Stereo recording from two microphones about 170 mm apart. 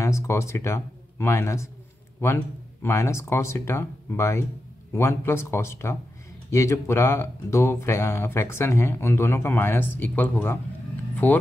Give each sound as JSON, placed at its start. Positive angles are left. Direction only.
{"t": 0.0, "sound": "speech", "side_deg": 15}
{"t": 2.8, "sound": "speech", "side_deg": 15}